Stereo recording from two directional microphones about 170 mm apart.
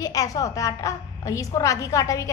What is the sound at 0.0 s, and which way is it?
A woman's voice, 20° left (ahead or behind).